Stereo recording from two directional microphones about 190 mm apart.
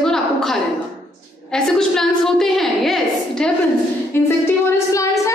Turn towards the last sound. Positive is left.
turn(degrees=15)  # may be behind; listen again after turning